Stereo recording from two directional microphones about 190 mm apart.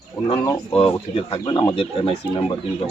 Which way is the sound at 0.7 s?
30° left (ahead or behind).